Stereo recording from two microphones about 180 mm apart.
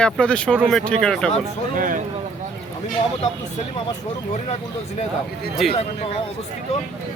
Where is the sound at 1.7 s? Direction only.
50° right (ahead or behind).